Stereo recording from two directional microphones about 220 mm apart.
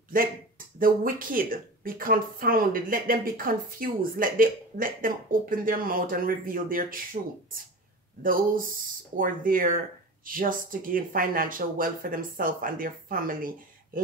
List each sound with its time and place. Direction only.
0.1 s a woman's voice: 40° right (ahead or behind)
8.2 s a woman's voice: 40° right (ahead or behind)